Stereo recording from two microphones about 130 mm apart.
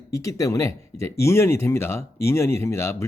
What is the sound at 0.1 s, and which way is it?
Speech, 25° left (ahead or behind).